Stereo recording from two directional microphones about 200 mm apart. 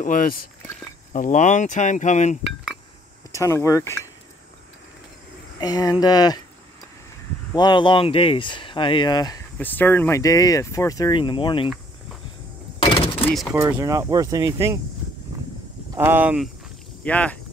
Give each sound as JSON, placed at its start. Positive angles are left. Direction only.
{"t": 0.0, "sound": "speech", "side_deg": 45}
{"t": 3.3, "sound": "speech", "side_deg": 15}
{"t": 5.6, "sound": "speech", "side_deg": 20}
{"t": 7.5, "sound": "speech", "side_deg": 20}
{"t": 9.6, "sound": "speech", "side_deg": 10}
{"t": 12.8, "sound": "door", "side_deg": 25}
{"t": 13.3, "sound": "speech", "side_deg": 0}
{"t": 13.6, "sound": "speech", "side_deg": -10}
{"t": 15.9, "sound": "speech", "side_deg": -10}
{"t": 17.0, "sound": "speech", "side_deg": 5}